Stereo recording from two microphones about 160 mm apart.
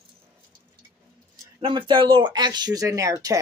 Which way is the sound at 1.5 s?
30° right (ahead or behind).